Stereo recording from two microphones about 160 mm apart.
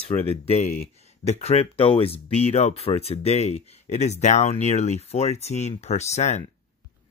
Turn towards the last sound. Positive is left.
turn(degrees=45)  # may be behind; listen again after turning